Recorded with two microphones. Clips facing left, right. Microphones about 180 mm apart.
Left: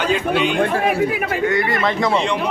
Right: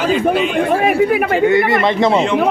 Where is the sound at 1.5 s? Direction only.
25° right (ahead or behind).